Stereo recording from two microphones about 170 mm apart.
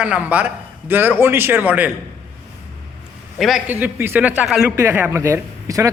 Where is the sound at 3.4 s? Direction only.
Centre (ahead or behind).